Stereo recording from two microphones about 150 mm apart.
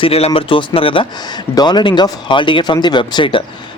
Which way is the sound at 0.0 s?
40° left (ahead or behind).